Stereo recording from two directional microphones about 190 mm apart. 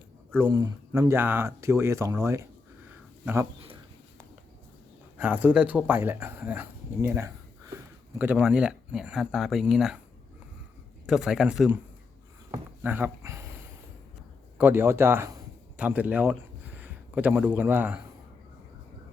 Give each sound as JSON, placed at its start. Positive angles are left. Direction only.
{"t": 0.3, "sound": "speech", "side_deg": -20}
{"t": 5.1, "sound": "speech", "side_deg": -10}
{"t": 11.0, "sound": "speech", "side_deg": 0}
{"t": 12.5, "sound": "a sound", "side_deg": -10}
{"t": 14.6, "sound": "a man's voice", "side_deg": -10}